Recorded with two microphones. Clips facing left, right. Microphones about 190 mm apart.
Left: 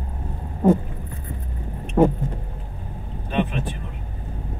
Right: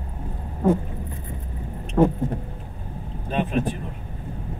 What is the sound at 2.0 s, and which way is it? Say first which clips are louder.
Vehicle: left 1 dB; 15° left (ahead or behind).